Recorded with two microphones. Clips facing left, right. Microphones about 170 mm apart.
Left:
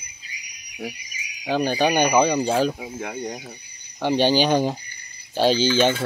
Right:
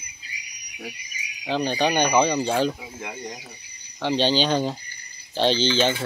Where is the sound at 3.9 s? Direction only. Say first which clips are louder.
Left 3 dB; 10° left (ahead or behind).